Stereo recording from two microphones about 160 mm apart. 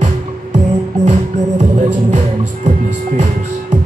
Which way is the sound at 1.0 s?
50° right (ahead or behind).